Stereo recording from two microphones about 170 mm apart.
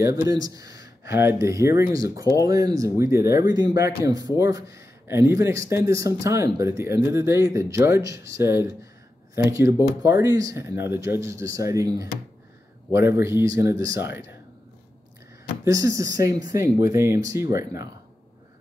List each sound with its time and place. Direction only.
0.0 s speech: 20° right (ahead or behind)
15.6 s speech: 20° right (ahead or behind)